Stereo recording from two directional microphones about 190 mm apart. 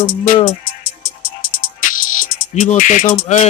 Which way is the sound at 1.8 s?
45° left (ahead or behind).